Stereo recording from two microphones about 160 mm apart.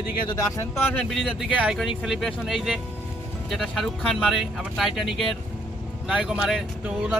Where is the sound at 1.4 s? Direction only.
5° right (ahead or behind).